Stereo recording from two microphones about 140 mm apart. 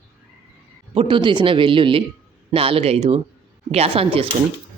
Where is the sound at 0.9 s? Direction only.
35° right (ahead or behind).